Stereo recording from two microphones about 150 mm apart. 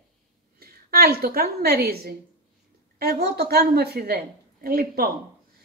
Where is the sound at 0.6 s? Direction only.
85° right.